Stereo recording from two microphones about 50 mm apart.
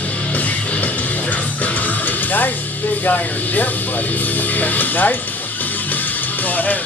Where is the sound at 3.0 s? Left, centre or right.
Left.